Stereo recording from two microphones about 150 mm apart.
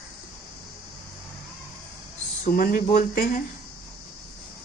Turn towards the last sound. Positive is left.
turn(degrees=65)  # may be behind; listen again after turning